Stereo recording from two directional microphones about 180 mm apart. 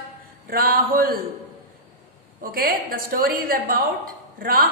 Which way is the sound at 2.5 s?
55° right (ahead or behind).